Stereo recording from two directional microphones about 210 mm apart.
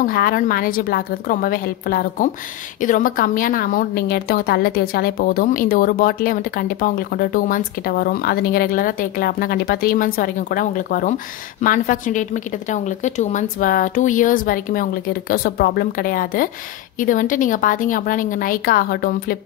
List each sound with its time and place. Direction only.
0.0 s a woman's voice: 45° left (ahead or behind)